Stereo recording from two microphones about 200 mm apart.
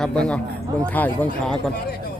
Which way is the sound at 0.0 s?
5° left (ahead or behind).